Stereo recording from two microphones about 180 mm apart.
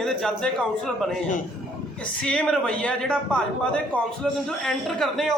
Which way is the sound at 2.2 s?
5° left (ahead or behind).